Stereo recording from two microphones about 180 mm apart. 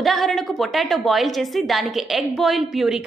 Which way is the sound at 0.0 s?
Centre (ahead or behind).